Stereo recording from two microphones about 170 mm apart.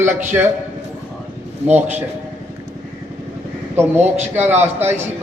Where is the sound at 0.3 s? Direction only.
15° right (ahead or behind).